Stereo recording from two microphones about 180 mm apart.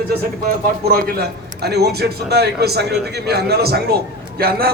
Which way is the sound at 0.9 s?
65° right (ahead or behind).